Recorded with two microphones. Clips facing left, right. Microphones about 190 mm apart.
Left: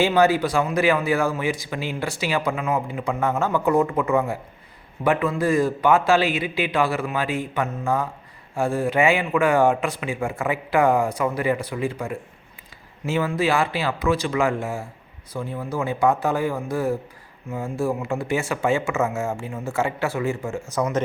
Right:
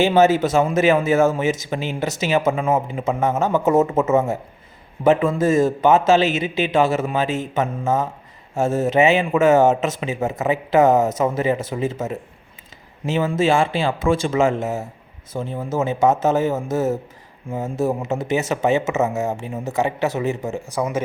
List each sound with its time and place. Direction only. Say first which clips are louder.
0.0 s speech: right 3 dB; 20° right (ahead or behind)